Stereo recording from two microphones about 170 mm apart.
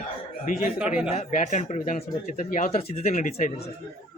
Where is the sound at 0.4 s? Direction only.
50° left (ahead or behind).